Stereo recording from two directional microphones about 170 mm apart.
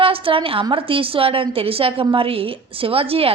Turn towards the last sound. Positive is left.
turn(degrees=-35)  # may be behind; listen again after turning